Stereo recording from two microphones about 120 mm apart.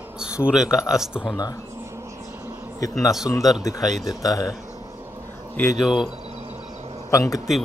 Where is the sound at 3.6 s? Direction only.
30° left (ahead or behind).